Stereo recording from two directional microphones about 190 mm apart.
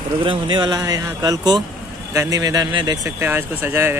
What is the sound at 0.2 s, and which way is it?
Speech, 25° right (ahead or behind).